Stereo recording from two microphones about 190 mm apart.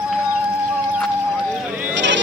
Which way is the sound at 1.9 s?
70° right (ahead or behind).